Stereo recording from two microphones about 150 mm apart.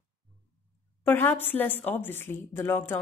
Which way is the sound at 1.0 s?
15° left (ahead or behind).